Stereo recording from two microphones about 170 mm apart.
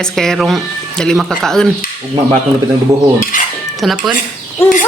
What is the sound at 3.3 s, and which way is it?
Cutlery, 50° left (ahead or behind).